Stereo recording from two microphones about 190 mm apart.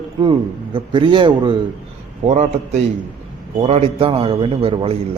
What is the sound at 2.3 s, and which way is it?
A man's voice, 35° right (ahead or behind).